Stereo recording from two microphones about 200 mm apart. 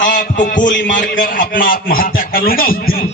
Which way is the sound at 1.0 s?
45° left (ahead or behind).